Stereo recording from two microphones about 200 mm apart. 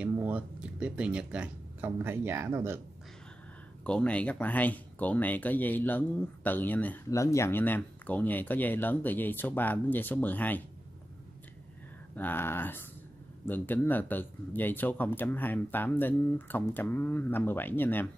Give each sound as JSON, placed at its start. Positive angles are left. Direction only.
{"t": 0.0, "sound": "speech", "side_deg": -5}
{"t": 3.8, "sound": "speech", "side_deg": 5}
{"t": 12.2, "sound": "speech", "side_deg": 10}